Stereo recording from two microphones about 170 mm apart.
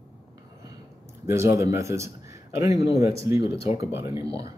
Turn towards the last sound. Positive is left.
turn(degrees=-15)  # may be behind; listen again after turning